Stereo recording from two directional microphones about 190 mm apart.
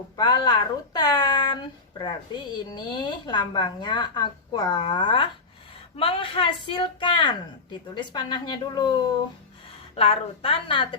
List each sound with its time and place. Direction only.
0.2 s speech: 20° left (ahead or behind)